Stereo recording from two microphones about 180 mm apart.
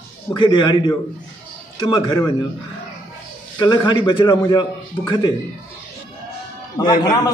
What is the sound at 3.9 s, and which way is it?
A man's voice, 25° left (ahead or behind).